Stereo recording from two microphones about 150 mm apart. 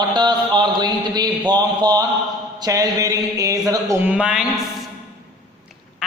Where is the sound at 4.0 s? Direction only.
5° right (ahead or behind).